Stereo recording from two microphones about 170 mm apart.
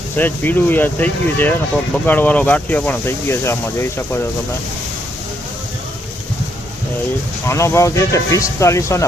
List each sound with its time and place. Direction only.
0.2 s speech: 10° left (ahead or behind)
7.4 s speech: 15° left (ahead or behind)